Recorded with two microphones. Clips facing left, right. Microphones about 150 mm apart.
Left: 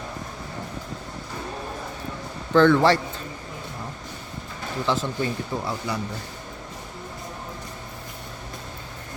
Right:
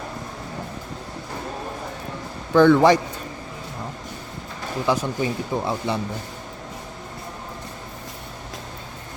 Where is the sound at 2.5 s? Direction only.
15° right (ahead or behind).